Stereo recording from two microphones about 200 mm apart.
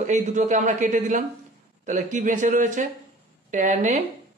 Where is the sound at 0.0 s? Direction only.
35° right (ahead or behind).